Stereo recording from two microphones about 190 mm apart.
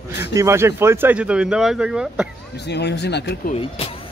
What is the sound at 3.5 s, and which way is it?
Speech, 30° left (ahead or behind).